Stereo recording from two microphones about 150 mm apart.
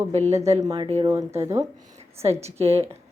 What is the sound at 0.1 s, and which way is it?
Speech, 45° right (ahead or behind).